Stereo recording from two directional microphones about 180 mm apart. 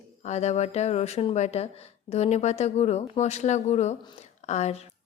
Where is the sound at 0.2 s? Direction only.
40° left (ahead or behind).